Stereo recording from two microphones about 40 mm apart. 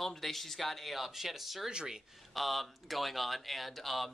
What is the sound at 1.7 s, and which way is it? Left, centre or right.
Speech, centre.